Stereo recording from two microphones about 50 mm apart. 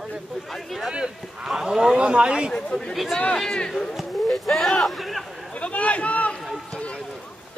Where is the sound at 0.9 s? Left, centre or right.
Centre.